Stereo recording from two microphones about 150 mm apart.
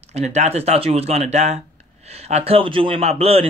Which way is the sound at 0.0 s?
45° right (ahead or behind).